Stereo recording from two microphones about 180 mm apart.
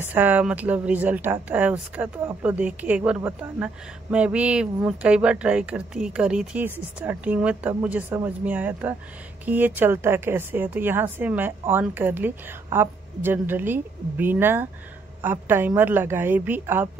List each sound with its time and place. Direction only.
0.0 s a woman's voice: 10° right (ahead or behind)